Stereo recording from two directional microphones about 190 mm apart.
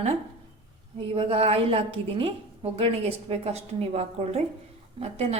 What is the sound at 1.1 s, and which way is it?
A woman's voice, 30° right (ahead or behind).